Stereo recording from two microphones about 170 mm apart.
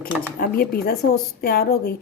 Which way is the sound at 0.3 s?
65° left (ahead or behind).